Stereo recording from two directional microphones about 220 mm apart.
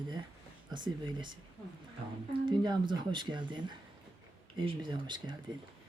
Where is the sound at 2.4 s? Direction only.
20° right (ahead or behind).